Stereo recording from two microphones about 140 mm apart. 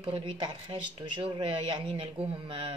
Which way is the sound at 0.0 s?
35° right (ahead or behind).